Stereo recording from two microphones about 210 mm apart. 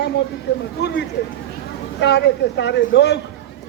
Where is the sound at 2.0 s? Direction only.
55° left (ahead or behind).